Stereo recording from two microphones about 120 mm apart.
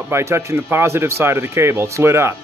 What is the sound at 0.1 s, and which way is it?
Speech, 20° right (ahead or behind).